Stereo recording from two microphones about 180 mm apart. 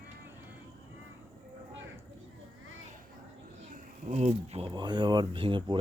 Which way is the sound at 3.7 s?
40° right (ahead or behind).